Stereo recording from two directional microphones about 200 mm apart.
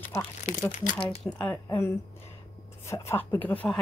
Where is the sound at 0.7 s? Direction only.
40° left (ahead or behind).